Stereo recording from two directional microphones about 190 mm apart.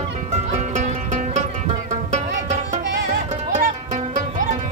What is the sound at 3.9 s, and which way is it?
Music, 40° right (ahead or behind).